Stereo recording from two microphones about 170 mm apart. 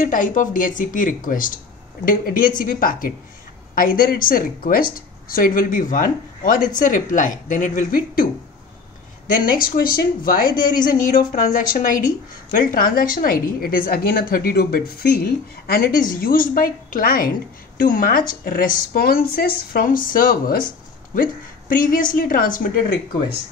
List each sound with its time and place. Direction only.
0.0 s a woman's voice: 50° left (ahead or behind)
9.6 s a woman's voice: 60° left (ahead or behind)